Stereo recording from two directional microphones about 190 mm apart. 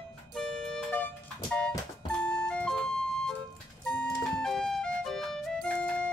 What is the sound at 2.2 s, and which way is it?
Ice cream truck, 5° left (ahead or behind).